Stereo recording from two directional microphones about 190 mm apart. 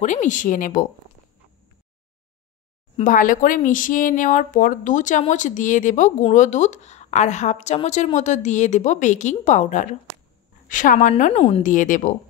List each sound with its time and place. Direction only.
0.0 s a woman's voice: 40° left (ahead or behind)
3.0 s a woman's voice: 45° left (ahead or behind)
11.6 s a woman's voice: 45° left (ahead or behind)